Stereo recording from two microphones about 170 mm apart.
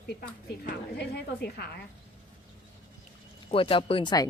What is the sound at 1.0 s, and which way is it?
Speech, 75° left (ahead or behind).